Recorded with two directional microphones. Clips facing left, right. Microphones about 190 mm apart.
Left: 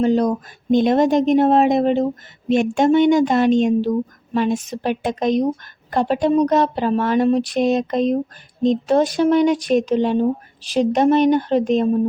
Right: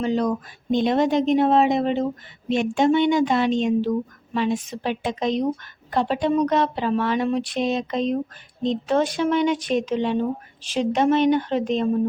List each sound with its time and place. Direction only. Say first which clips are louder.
0.0 s speech: left 5 dB; 40° left (ahead or behind)